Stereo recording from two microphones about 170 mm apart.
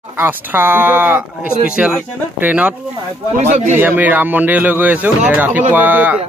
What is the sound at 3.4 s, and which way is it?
Speech, 45° right (ahead or behind).